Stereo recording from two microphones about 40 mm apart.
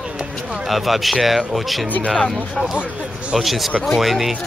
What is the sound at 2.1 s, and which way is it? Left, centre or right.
Speech, centre.